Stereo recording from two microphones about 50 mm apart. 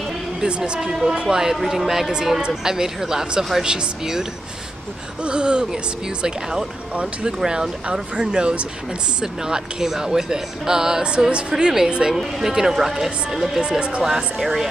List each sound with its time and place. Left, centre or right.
0.4 s speech: centre
7.3 s speech: centre
13.6 s speech: centre
14.0 s speech: centre